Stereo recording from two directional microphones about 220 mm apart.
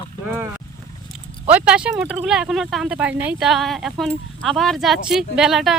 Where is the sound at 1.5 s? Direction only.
5° right (ahead or behind).